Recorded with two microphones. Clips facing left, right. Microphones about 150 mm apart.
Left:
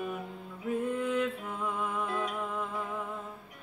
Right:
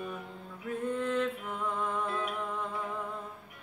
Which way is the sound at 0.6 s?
10° left (ahead or behind).